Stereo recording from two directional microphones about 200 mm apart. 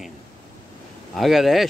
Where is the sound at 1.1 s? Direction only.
Centre (ahead or behind).